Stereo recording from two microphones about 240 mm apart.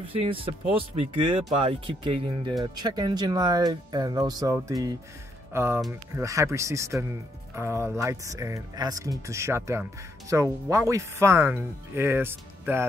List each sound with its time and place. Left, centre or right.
0.0 s speech: right